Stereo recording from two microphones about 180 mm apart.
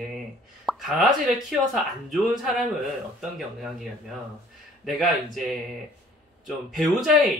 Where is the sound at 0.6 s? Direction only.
Centre (ahead or behind).